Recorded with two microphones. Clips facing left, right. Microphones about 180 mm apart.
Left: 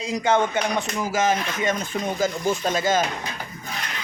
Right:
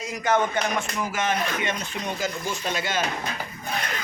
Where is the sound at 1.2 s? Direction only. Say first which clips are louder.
Left 3 dB; 40° left (ahead or behind).